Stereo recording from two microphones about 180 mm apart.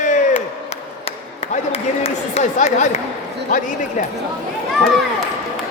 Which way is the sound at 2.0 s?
35° left (ahead or behind).